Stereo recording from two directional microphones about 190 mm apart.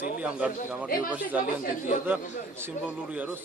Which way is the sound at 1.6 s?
40° left (ahead or behind).